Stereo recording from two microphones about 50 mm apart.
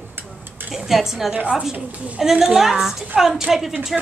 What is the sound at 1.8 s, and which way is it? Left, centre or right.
Speech, right.